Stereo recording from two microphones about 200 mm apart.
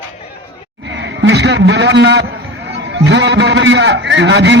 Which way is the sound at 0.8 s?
60° right (ahead or behind).